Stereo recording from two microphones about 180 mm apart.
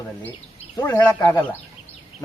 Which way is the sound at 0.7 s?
20° left (ahead or behind).